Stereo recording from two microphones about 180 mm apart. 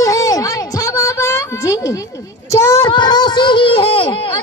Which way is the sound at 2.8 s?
25° left (ahead or behind).